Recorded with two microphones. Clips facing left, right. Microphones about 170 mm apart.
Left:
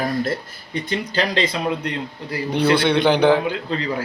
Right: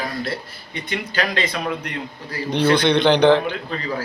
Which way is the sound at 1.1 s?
30° left (ahead or behind).